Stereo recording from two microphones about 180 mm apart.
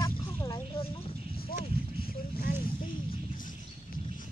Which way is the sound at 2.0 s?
55° left (ahead or behind).